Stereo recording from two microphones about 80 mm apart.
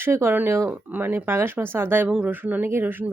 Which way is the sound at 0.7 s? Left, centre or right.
Right.